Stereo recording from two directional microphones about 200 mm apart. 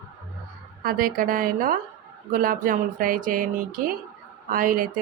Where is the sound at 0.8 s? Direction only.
45° right (ahead or behind).